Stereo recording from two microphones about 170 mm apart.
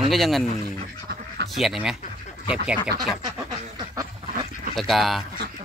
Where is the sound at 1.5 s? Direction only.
Centre (ahead or behind).